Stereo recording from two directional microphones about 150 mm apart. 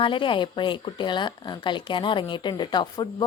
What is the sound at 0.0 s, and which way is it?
A woman's voice, 35° left (ahead or behind).